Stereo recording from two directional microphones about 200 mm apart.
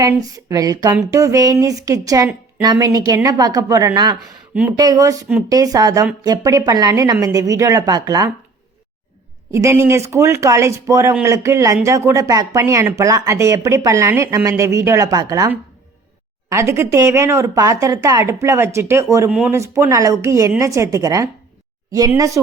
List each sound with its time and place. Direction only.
0.0 s speech: 15° right (ahead or behind)
9.5 s speech: 15° right (ahead or behind)